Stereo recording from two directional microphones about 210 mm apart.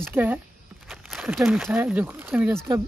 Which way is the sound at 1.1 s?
Centre (ahead or behind).